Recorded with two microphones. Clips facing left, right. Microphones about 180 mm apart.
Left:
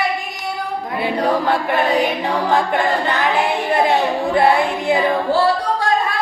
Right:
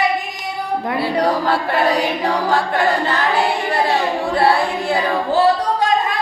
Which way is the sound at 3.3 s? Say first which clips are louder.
Left 1 dB; 20° left (ahead or behind).